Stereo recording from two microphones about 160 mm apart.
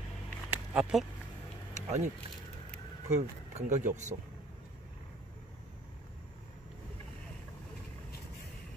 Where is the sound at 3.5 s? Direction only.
50° right (ahead or behind).